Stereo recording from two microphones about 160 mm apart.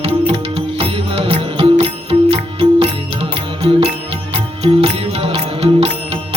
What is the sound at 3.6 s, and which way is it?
Music, 35° right (ahead or behind).